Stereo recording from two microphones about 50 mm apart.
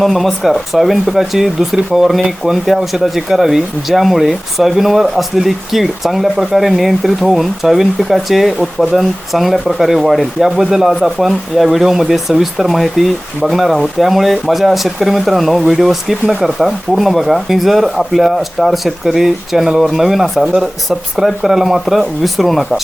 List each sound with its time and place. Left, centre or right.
0.0 s speech: centre